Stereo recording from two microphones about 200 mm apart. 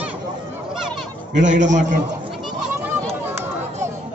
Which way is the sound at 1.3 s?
65° right (ahead or behind).